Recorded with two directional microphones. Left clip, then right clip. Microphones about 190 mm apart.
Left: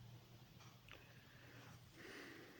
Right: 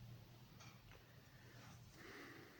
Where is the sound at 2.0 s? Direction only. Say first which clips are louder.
Left 1 dB; 15° left (ahead or behind).